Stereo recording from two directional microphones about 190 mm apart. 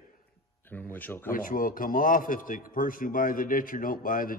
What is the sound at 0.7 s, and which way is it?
Speech, 10° left (ahead or behind).